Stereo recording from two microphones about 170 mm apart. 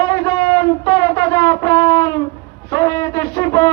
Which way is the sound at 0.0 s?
20° left (ahead or behind).